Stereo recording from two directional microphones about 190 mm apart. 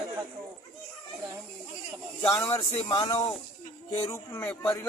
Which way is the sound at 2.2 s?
15° left (ahead or behind).